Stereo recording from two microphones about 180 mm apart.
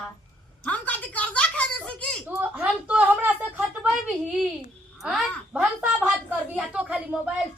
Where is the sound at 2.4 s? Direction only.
10° right (ahead or behind).